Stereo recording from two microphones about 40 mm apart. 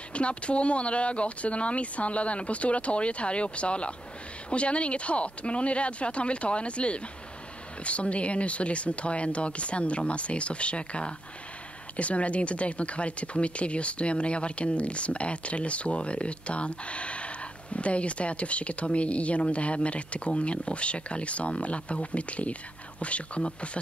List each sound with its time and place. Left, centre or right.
0.1 s speech: left